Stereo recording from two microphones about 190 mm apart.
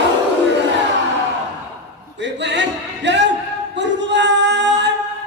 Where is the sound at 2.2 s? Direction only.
65° right (ahead or behind).